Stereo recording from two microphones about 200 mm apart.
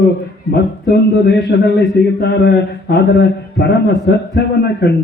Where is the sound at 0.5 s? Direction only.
55° left (ahead or behind).